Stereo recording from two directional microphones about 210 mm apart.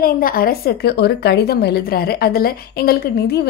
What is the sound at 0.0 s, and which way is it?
A woman's voice, 45° left (ahead or behind).